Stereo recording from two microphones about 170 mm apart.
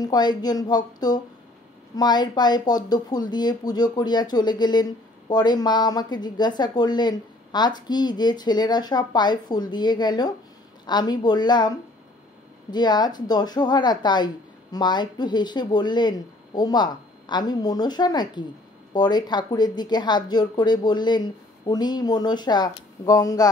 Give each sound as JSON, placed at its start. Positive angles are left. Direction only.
{"t": 0.0, "sound": "speech", "side_deg": 25}
{"t": 12.7, "sound": "speech", "side_deg": 25}